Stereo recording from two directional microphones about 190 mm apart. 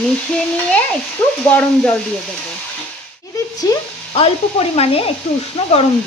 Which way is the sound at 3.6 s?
20° left (ahead or behind).